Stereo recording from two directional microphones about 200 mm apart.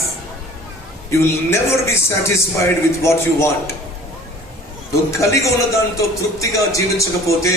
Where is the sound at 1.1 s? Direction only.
15° left (ahead or behind).